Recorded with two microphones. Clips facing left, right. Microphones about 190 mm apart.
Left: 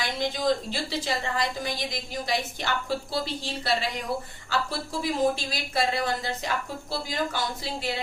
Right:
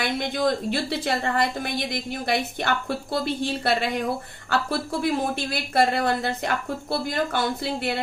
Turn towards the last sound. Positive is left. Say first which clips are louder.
# right 5 dB
turn(degrees=-60)  # may be behind; listen again after turning